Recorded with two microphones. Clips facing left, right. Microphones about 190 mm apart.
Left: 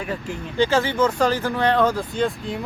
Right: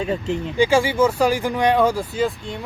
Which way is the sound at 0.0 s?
25° right (ahead or behind).